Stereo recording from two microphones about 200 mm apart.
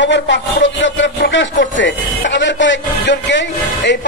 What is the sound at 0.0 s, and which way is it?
A man's voice, 65° left (ahead or behind).